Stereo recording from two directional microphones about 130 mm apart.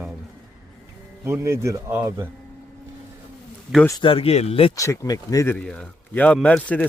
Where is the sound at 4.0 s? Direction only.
45° left (ahead or behind).